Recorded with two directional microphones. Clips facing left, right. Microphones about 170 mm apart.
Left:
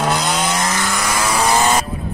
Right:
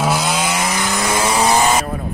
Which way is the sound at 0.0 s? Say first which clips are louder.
Even; 5° right (ahead or behind).